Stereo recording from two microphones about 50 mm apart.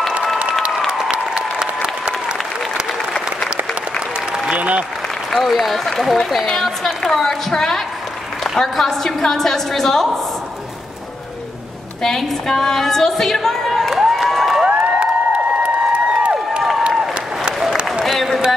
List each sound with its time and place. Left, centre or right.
0.4 s applause: centre
4.5 s applause: right
5.3 s a woman's voice: centre
12.0 s a woman's voice: centre
14.6 s a sound: right
18.1 s a sound: centre